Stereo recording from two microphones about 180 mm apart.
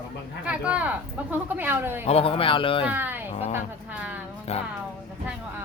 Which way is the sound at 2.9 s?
10° right (ahead or behind).